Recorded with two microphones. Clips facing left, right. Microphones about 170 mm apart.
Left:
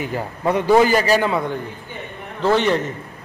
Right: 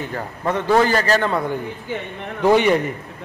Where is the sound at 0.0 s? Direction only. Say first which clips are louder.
Left 3 dB; 10° left (ahead or behind).